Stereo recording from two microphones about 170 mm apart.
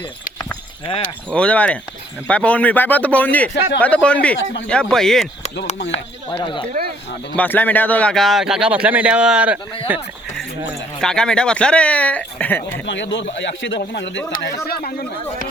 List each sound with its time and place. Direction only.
0.9 s speech: 30° left (ahead or behind)
1.3 s speech: 5° left (ahead or behind)
5.9 s speech: 30° left (ahead or behind)
7.3 s speech: 10° left (ahead or behind); by 10.0 s 10° right (ahead or behind)
11.0 s speech: 5° left (ahead or behind)
12.8 s speech: 90° left
14.4 s speech: 65° left (ahead or behind)